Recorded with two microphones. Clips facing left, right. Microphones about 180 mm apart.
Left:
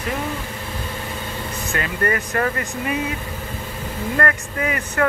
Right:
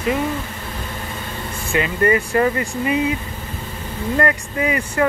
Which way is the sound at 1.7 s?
10° right (ahead or behind).